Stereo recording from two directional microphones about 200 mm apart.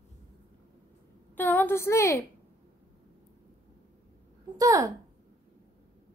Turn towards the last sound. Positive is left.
turn(degrees=-20)  # may be behind; listen again after turning